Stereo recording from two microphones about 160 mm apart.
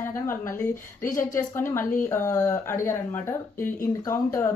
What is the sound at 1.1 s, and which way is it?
Speech, 15° left (ahead or behind).